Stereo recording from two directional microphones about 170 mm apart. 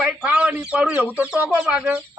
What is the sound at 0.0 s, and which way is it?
Speech, 5° right (ahead or behind).